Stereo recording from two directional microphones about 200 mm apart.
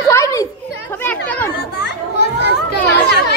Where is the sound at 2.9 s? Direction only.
55° left (ahead or behind).